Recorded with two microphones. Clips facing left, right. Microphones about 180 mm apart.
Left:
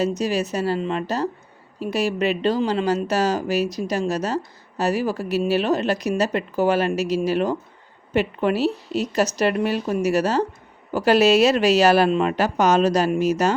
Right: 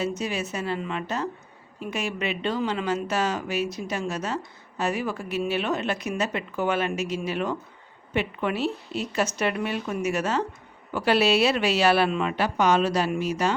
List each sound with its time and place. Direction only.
0.0 s speech: 40° left (ahead or behind)